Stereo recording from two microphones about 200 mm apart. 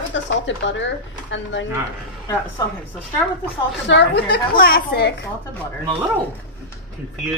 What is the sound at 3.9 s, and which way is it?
A woman's voice, 55° left (ahead or behind).